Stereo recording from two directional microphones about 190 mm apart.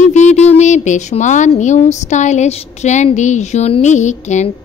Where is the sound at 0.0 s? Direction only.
40° left (ahead or behind).